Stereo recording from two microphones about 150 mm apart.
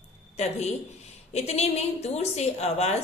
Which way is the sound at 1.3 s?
45° left (ahead or behind).